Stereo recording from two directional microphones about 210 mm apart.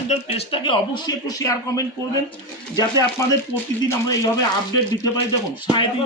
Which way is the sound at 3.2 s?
15° left (ahead or behind).